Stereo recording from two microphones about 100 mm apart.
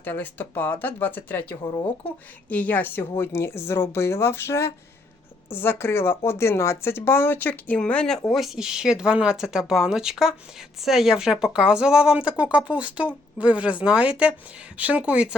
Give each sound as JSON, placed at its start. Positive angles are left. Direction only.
{"t": 0.0, "sound": "speech", "side_deg": 20}
{"t": 8.3, "sound": "speech", "side_deg": -5}